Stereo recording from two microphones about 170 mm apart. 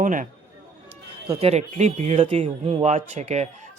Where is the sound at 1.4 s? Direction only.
40° right (ahead or behind).